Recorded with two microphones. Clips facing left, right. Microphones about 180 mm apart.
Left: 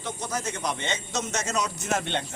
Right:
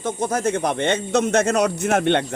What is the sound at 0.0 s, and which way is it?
A man's voice, 50° right (ahead or behind).